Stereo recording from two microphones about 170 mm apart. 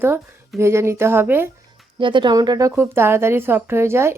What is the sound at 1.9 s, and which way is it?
A woman's voice, 30° right (ahead or behind).